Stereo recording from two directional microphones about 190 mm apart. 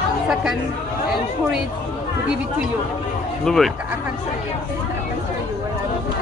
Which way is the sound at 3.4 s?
5° left (ahead or behind).